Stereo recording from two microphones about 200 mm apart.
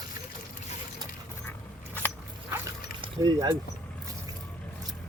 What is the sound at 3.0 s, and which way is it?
Speech, 20° right (ahead or behind).